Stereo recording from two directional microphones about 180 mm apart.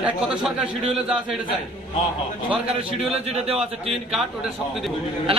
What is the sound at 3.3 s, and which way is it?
Speech, 35° right (ahead or behind).